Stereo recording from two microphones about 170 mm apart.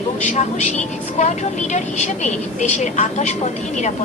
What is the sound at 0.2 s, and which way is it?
Speech, 45° left (ahead or behind).